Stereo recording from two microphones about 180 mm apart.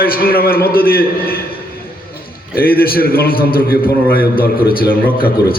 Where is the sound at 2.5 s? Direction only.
55° left (ahead or behind).